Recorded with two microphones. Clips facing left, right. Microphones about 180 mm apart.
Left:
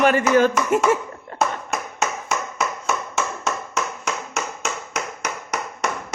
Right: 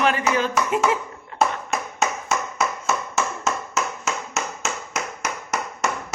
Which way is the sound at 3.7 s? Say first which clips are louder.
Even; 5° right (ahead or behind).